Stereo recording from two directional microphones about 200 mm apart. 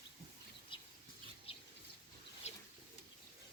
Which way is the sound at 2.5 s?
35° left (ahead or behind).